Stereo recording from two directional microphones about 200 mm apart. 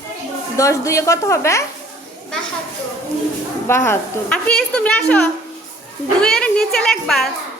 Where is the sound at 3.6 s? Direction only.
10° left (ahead or behind).